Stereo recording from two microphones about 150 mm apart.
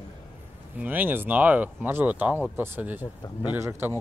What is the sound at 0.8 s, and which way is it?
Speech, 10° right (ahead or behind).